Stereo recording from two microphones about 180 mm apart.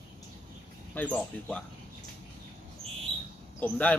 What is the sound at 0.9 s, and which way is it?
Speech, 10° left (ahead or behind).